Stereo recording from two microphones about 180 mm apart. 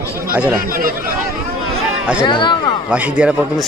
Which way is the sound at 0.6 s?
50° right (ahead or behind).